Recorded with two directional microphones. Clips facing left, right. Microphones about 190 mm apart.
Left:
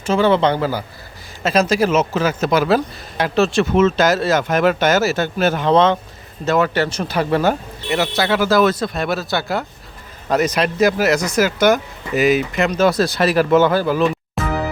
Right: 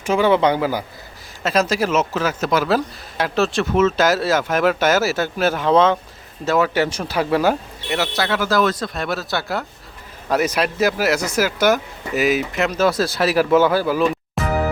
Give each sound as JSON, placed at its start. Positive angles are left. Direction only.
{"t": 0.0, "sound": "speech", "side_deg": -15}
{"t": 1.5, "sound": "speech", "side_deg": 0}